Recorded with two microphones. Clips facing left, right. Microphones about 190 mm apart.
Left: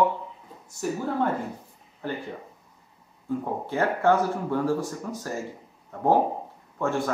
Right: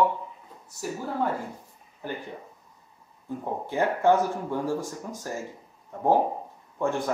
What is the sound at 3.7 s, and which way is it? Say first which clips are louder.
Speech: even; 15° right (ahead or behind).